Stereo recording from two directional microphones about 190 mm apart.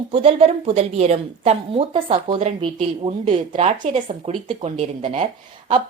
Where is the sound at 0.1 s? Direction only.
30° right (ahead or behind).